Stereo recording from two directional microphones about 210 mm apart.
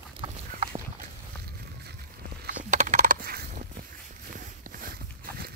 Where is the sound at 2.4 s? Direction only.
35° right (ahead or behind).